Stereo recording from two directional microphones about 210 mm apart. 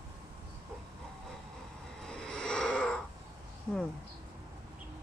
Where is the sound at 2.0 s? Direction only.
5° left (ahead or behind).